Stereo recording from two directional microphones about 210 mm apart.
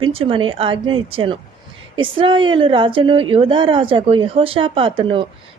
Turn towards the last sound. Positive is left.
turn(degrees=-25)  # may be behind; listen again after turning